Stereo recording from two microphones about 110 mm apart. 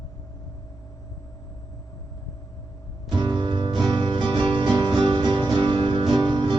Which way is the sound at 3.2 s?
45° right (ahead or behind).